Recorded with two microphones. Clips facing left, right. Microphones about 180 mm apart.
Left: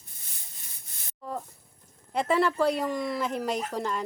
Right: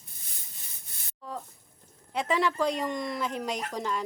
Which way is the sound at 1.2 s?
10° left (ahead or behind).